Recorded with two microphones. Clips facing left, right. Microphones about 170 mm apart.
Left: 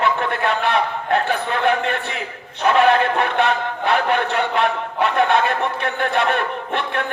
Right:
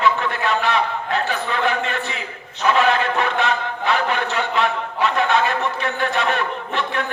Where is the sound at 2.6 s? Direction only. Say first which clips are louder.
Left 3 dB; 55° left (ahead or behind).